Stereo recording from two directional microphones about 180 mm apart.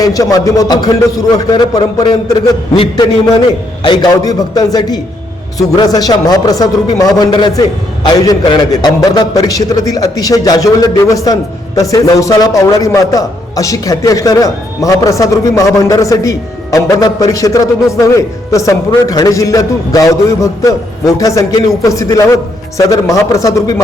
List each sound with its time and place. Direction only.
0.0 s a man's voice: 20° left (ahead or behind)